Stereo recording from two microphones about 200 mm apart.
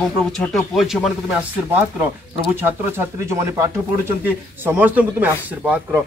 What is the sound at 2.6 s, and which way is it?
Speech, 10° right (ahead or behind).